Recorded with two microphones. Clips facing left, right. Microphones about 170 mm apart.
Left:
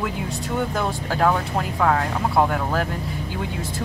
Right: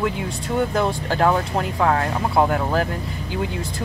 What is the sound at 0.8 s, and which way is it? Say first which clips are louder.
Speech: right 2 dB; centre (ahead or behind).